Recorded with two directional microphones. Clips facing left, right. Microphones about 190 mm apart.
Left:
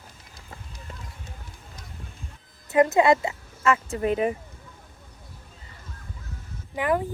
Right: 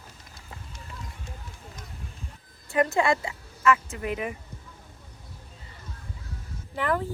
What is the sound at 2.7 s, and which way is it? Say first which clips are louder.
Speech: left 5 dB; 20° left (ahead or behind).